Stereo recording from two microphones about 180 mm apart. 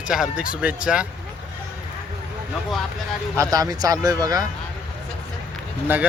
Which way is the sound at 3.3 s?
20° right (ahead or behind).